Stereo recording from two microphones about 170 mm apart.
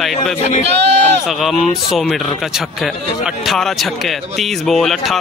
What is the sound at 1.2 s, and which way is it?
A man's voice, centre (ahead or behind).